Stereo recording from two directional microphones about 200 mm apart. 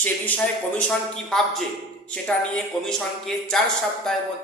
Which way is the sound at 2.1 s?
5° left (ahead or behind).